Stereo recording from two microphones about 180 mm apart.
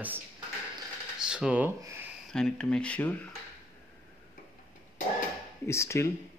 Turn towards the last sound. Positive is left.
turn(degrees=15)  # may be behind; listen again after turning